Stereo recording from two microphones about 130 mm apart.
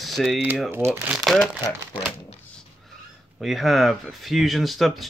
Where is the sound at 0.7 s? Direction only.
15° right (ahead or behind).